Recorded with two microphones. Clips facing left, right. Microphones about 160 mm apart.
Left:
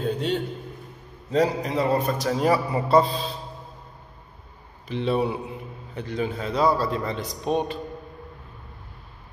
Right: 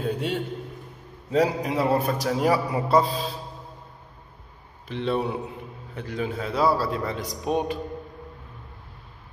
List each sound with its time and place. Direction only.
0.0 s a sound: 5° right (ahead or behind)
1.3 s a man's voice: 10° right (ahead or behind)
4.8 s a man's voice: centre (ahead or behind)